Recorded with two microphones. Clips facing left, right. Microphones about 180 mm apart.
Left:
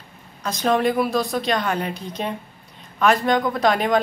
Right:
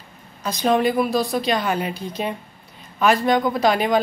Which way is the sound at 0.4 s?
Centre (ahead or behind).